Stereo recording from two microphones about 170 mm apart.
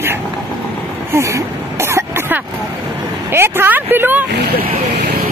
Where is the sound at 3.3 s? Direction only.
15° right (ahead or behind).